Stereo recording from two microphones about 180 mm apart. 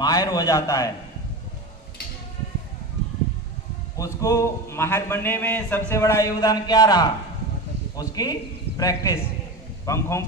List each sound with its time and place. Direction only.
0.0 s a man's voice: 20° left (ahead or behind)
3.9 s a man's voice: 20° left (ahead or behind)